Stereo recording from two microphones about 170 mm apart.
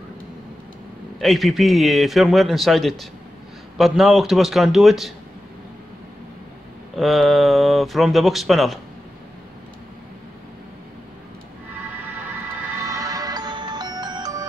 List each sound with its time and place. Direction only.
1.2 s a man's voice: centre (ahead or behind)
7.0 s a man's voice: centre (ahead or behind)
12.5 s music: 20° right (ahead or behind)